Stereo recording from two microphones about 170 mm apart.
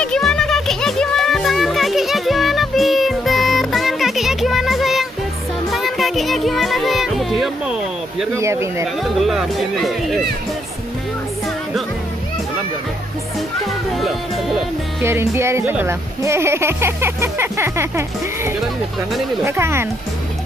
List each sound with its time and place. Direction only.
0.0 s music: 5° left (ahead or behind)
8.4 s speech: 15° right (ahead or behind)
9.0 s speech: centre (ahead or behind)
13.7 s speech: centre (ahead or behind)
15.0 s speech: 15° right (ahead or behind)